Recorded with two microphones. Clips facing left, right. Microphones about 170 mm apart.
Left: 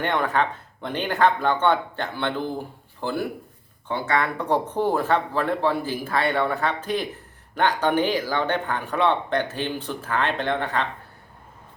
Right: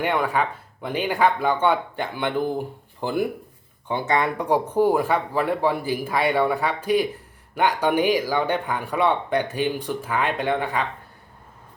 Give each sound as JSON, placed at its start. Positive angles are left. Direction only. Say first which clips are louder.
{"t": 0.0, "sound": "speech", "louder": "right 1 dB", "side_deg": -10}